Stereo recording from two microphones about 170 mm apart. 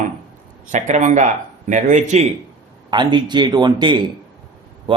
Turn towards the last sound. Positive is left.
turn(degrees=-30)  # may be behind; listen again after turning